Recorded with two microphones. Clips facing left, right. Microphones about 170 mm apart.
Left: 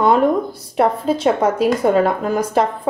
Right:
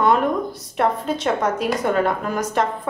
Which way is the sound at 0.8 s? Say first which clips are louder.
Left 5 dB; 30° left (ahead or behind).